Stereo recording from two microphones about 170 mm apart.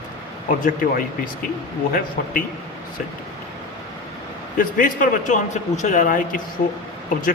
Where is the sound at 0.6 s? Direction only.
55° left (ahead or behind).